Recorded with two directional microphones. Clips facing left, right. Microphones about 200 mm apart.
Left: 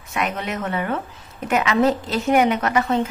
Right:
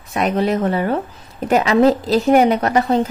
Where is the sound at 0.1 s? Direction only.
35° right (ahead or behind).